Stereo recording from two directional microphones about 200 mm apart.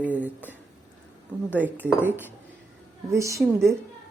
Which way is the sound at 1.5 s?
10° right (ahead or behind).